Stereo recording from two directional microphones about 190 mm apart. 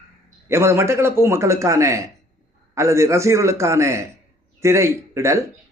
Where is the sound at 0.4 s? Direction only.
15° right (ahead or behind).